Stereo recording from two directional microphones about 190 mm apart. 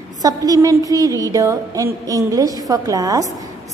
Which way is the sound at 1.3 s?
15° right (ahead or behind).